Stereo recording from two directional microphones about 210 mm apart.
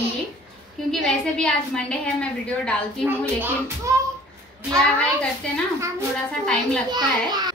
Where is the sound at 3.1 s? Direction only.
10° right (ahead or behind).